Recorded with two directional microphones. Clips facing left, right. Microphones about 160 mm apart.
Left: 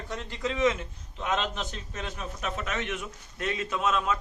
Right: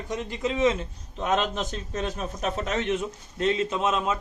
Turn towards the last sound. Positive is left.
turn(degrees=-20)  # may be behind; listen again after turning